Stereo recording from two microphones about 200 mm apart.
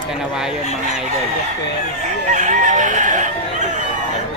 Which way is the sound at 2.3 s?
40° right (ahead or behind).